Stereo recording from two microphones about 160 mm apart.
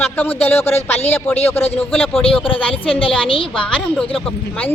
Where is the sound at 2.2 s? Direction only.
35° left (ahead or behind).